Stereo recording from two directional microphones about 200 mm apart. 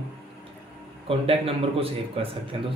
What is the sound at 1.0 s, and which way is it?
Speech, 30° right (ahead or behind).